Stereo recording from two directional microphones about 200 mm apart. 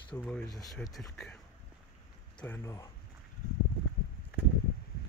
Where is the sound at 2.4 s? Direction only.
10° left (ahead or behind).